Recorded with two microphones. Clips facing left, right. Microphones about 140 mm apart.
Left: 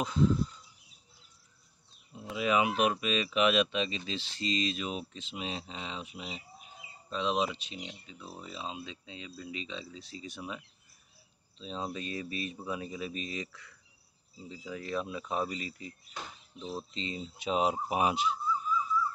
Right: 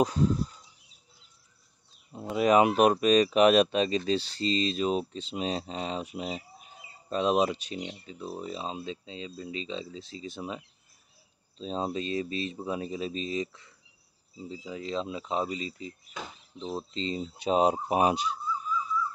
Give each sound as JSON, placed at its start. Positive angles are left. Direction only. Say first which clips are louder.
{"t": 0.0, "sound": "a sound", "louder": "right 2 dB", "side_deg": -45}
{"t": 2.3, "sound": "speech", "louder": "right 7 dB", "side_deg": -45}
{"t": 11.9, "sound": "speech", "louder": "right 6 dB", "side_deg": -25}